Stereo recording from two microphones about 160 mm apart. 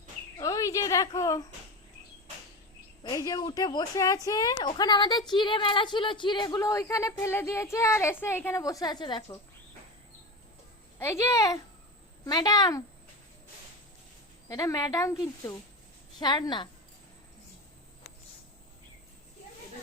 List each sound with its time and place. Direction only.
0.3 s a sound: 20° left (ahead or behind)
3.0 s a woman's voice: 25° left (ahead or behind)
11.0 s a woman's voice: 15° left (ahead or behind)
14.4 s a woman's voice: 20° left (ahead or behind)